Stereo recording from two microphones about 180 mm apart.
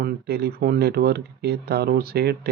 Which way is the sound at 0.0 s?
65° right (ahead or behind).